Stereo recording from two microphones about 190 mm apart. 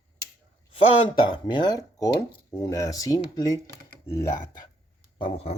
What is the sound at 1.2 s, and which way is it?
Speech, 25° left (ahead or behind).